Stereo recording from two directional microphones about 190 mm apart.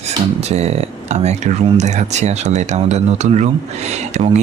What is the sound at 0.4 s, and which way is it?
Speech, 35° right (ahead or behind).